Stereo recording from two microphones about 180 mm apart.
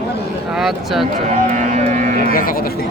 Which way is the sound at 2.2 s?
50° left (ahead or behind).